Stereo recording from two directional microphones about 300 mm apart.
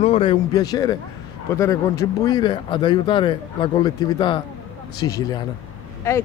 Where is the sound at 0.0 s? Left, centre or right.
Centre.